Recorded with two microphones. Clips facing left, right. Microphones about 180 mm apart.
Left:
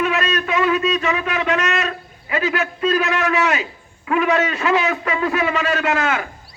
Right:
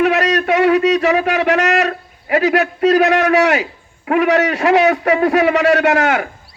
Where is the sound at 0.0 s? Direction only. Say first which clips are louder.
Right 6 dB; 70° right (ahead or behind).